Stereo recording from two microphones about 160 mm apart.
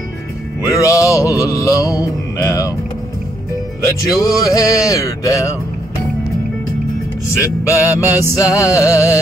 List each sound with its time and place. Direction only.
0.6 s music: 20° left (ahead or behind)
4.2 s music: 20° left (ahead or behind)
7.2 s music: 20° left (ahead or behind)
8.0 s music: 15° right (ahead or behind)
8.4 s music: 20° left (ahead or behind)